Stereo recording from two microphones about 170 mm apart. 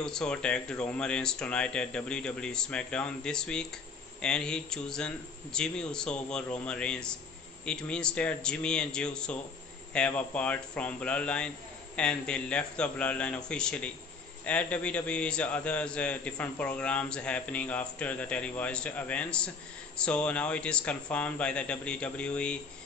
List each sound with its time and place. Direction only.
0.0 s a man's voice: 5° left (ahead or behind)